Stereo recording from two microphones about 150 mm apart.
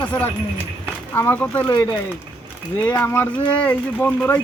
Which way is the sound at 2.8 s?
10° left (ahead or behind).